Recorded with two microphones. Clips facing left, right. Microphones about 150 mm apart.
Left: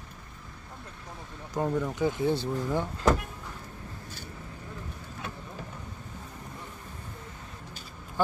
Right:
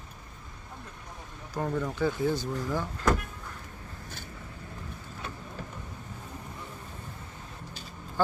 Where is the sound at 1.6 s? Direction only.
15° left (ahead or behind).